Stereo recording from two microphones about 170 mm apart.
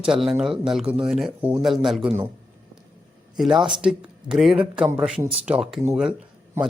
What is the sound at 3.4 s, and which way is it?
A man's voice, 5° right (ahead or behind).